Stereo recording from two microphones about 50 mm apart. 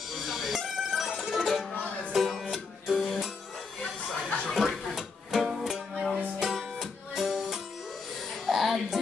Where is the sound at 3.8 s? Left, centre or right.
Centre.